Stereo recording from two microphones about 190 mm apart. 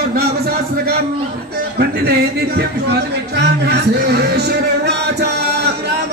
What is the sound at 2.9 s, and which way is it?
Speech, 60° right (ahead or behind).